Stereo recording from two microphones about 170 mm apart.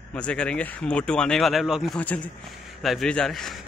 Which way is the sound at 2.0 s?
10° left (ahead or behind).